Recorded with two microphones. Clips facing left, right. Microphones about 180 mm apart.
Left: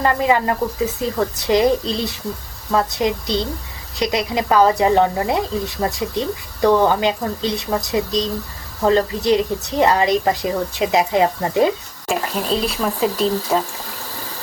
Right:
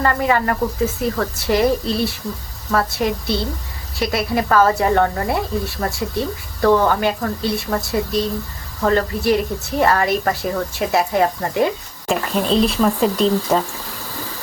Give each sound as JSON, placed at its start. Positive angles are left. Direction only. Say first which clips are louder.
{"t": 0.0, "sound": "a woman's voice", "louder": "left 1 dB", "side_deg": 15}
{"t": 12.0, "sound": "speech", "louder": "right 2 dB", "side_deg": 5}